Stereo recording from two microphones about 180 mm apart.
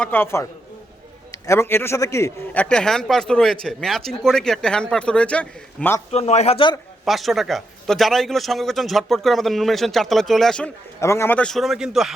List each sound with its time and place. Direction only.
0.0 s a man's voice: 10° left (ahead or behind)
6.1 s speech: 35° left (ahead or behind)
7.0 s a man's voice: centre (ahead or behind)
11.0 s a man's voice: 15° left (ahead or behind); by 12.1 s centre (ahead or behind)